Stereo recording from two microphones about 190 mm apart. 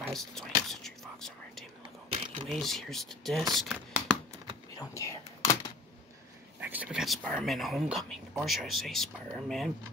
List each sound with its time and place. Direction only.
0.1 s whispering: centre (ahead or behind)
2.0 s a sound: 30° right (ahead or behind)
2.4 s speech: centre (ahead or behind)
3.5 s a sound: centre (ahead or behind)
4.7 s speech: 15° left (ahead or behind)
6.6 s speech: 10° right (ahead or behind)